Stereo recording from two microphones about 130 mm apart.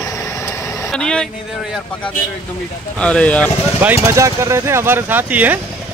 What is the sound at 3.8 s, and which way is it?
Speech, 15° right (ahead or behind).